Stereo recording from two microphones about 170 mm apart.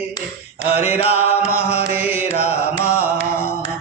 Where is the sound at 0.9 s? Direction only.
40° left (ahead or behind).